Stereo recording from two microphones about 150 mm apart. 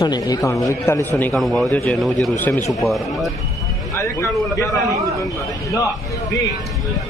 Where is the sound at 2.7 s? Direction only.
Centre (ahead or behind).